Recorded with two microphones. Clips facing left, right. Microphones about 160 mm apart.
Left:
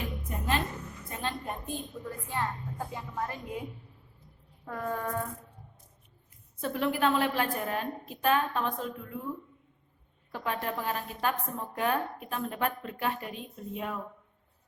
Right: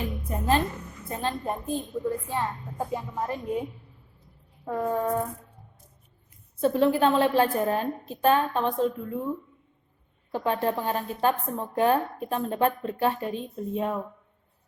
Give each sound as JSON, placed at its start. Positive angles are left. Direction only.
{"t": 0.3, "sound": "a woman's voice", "side_deg": -35}
{"t": 4.6, "sound": "speech", "side_deg": -25}
{"t": 6.6, "sound": "a woman's voice", "side_deg": -30}
{"t": 10.3, "sound": "a woman's voice", "side_deg": -30}